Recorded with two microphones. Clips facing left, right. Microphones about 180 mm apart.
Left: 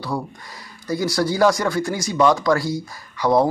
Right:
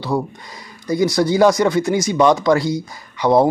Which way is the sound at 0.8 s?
20° right (ahead or behind).